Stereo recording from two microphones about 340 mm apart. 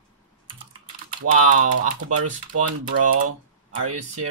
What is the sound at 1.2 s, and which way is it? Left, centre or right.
Speech, right.